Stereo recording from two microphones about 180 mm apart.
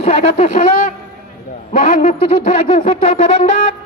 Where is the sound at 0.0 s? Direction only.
45° left (ahead or behind).